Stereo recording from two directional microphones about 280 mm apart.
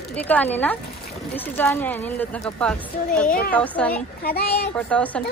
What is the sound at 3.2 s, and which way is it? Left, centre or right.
Speech, left.